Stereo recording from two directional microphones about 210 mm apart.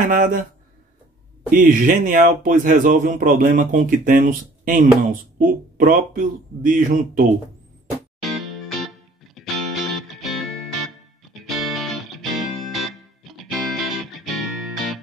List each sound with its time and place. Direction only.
0.0 s speech: 40° right (ahead or behind)
1.5 s speech: 40° right (ahead or behind)
8.2 s music: centre (ahead or behind)